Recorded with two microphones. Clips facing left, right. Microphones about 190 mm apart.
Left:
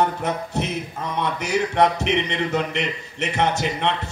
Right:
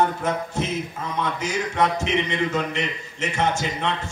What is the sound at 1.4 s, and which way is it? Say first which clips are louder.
A man's voice: left 5 dB; 65° left (ahead or behind).